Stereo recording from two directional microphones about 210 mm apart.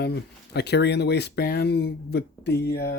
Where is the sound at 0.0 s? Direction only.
50° left (ahead or behind).